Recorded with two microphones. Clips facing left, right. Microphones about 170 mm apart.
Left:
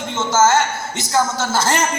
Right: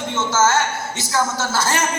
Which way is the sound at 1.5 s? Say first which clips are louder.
Left 3 dB; 15° left (ahead or behind).